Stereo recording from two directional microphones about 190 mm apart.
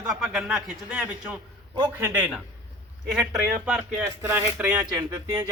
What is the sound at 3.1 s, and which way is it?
A man's voice, 5° right (ahead or behind).